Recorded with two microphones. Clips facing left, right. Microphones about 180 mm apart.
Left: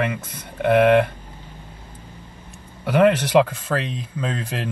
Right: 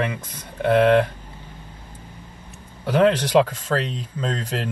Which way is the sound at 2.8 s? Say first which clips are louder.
Left 1 dB; 10° left (ahead or behind).